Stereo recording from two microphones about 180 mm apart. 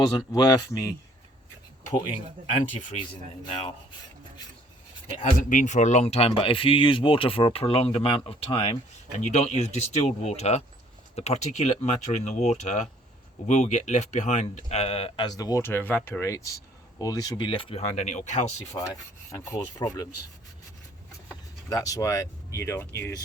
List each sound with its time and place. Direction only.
0.3 s rub: 20° left (ahead or behind)
3.4 s speech: 30° left (ahead or behind)
5.2 s speech: 45° left (ahead or behind)
19.3 s rub: 20° left (ahead or behind)
21.7 s speech: 20° left (ahead or behind)